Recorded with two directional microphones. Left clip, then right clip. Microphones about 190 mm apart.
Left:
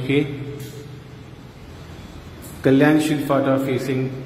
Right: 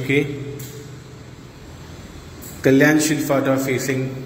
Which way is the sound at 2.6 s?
15° left (ahead or behind).